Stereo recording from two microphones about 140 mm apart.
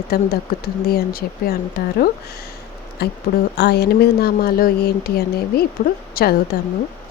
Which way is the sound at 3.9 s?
90° left.